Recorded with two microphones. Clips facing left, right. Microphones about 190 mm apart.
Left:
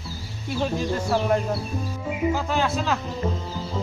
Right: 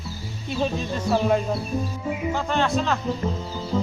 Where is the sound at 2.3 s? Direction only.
5° left (ahead or behind).